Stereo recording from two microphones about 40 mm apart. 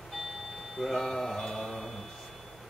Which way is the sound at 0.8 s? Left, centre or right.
Centre.